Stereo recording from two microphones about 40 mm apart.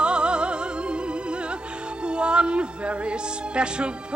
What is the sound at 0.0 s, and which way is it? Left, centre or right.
Music, right.